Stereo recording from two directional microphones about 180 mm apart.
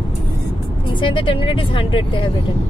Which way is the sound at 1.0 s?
30° left (ahead or behind).